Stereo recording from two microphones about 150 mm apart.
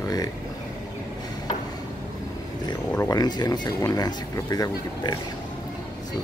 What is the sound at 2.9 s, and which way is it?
Speech, 20° left (ahead or behind).